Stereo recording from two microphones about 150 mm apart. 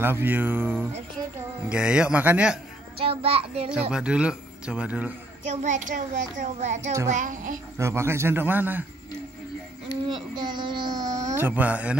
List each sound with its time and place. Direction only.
0.0 s speech: 15° right (ahead or behind)
3.1 s child singing: 40° right (ahead or behind)
3.9 s speech: 5° right (ahead or behind)
5.5 s a child's voice: 55° right (ahead or behind)
7.7 s speech: 15° right (ahead or behind)
10.0 s speech: 30° right (ahead or behind); by 12.0 s 10° right (ahead or behind)